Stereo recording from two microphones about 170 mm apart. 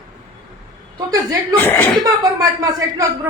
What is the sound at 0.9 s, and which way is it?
A man's voice, 20° right (ahead or behind).